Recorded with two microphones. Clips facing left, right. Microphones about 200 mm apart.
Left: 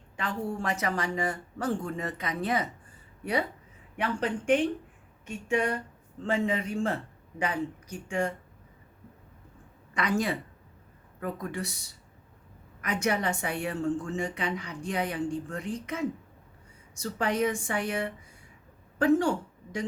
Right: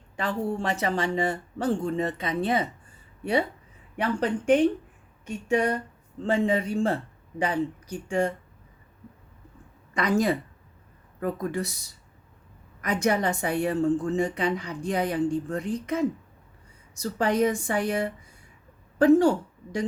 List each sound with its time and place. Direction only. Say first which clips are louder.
0.2 s speech: right 4 dB; 30° right (ahead or behind)
3.9 s a woman's voice: right 4 dB; 40° right (ahead or behind)
9.9 s a woman's voice: right 5 dB; 40° right (ahead or behind)
12.8 s a woman's voice: right 4 dB; 35° right (ahead or behind)